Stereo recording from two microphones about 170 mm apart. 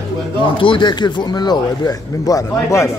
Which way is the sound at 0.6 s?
30° left (ahead or behind).